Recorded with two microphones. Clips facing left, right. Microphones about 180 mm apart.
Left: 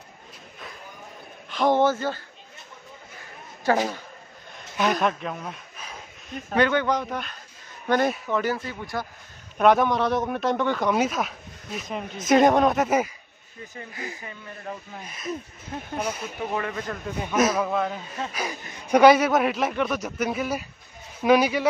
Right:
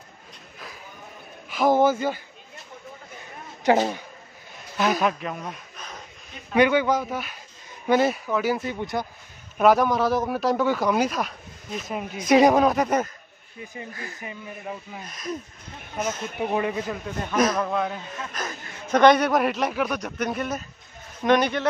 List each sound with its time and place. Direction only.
1.5 s a man's voice: 10° right (ahead or behind)
3.6 s speech: 20° right (ahead or behind)
4.7 s speech: centre (ahead or behind)
6.5 s a man's voice: 10° right (ahead or behind)
8.5 s speech: 20° right (ahead or behind)
9.6 s a man's voice: centre (ahead or behind)
13.9 s speech: 15° left (ahead or behind)
14.2 s speech: 10° right (ahead or behind)
15.0 s speech: 5° left (ahead or behind)
16.5 s speech: 15° right (ahead or behind)
17.2 s a man's voice: 5° left (ahead or behind)
18.3 s a man's voice: 10° left (ahead or behind)